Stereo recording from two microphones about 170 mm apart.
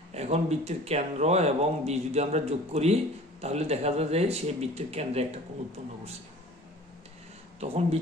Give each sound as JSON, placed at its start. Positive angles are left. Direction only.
{"t": 0.1, "sound": "speech", "side_deg": -40}
{"t": 7.6, "sound": "speech", "side_deg": -35}